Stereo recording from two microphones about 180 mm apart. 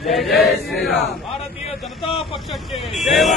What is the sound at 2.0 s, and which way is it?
Speech, 30° left (ahead or behind).